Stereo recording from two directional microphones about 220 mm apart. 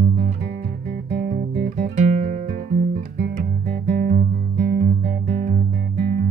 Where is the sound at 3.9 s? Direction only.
35° right (ahead or behind).